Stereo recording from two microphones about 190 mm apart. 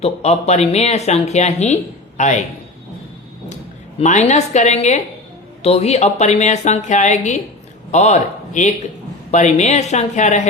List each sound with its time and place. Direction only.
0.0 s speech: 35° left (ahead or behind)
4.0 s a man's voice: 40° left (ahead or behind)